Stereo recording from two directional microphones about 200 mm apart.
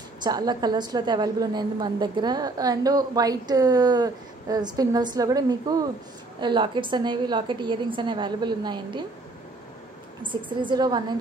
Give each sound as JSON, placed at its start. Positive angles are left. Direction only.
{"t": 0.2, "sound": "a woman's voice", "side_deg": -20}
{"t": 10.2, "sound": "a woman's voice", "side_deg": -25}